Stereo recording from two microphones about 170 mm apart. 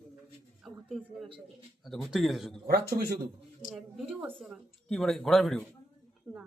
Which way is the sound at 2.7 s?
65° right (ahead or behind).